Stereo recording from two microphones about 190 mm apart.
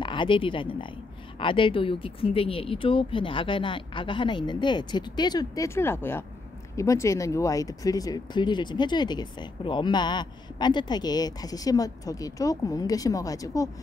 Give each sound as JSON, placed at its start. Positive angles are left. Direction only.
{"t": 0.0, "sound": "speech", "side_deg": 25}